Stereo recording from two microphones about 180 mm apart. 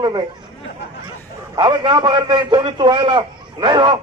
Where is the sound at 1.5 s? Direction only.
25° right (ahead or behind).